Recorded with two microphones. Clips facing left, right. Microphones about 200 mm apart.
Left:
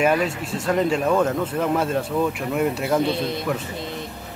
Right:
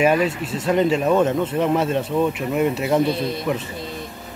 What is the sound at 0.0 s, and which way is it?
Speech, 5° right (ahead or behind).